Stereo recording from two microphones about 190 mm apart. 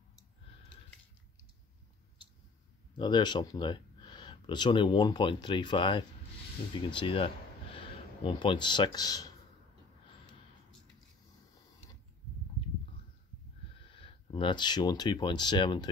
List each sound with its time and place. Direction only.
3.0 s speech: 25° left (ahead or behind)
13.7 s speech: 30° left (ahead or behind)